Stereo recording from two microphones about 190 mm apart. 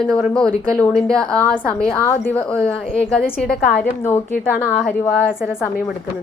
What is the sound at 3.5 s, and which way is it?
Speech, 55° left (ahead or behind).